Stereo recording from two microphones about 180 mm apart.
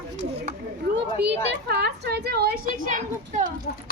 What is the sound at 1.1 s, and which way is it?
A woman's voice, 70° right (ahead or behind).